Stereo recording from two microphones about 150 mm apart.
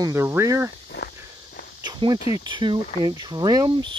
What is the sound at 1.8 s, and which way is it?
Speech, 30° right (ahead or behind).